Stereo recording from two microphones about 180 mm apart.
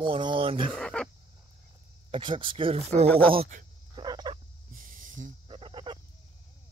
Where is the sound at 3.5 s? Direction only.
50° right (ahead or behind).